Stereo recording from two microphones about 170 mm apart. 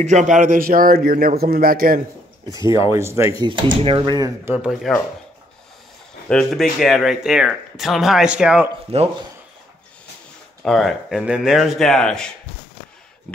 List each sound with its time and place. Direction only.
0.0 s a man's voice: 45° right (ahead or behind)
2.6 s speech: 30° left (ahead or behind)
2.9 s speech: 15° right (ahead or behind)
3.3 s speech: 30° right (ahead or behind)
4.5 s speech: 5° right (ahead or behind)
6.2 s speech: centre (ahead or behind)
8.9 s speech: 35° right (ahead or behind)
10.6 s speech: centre (ahead or behind)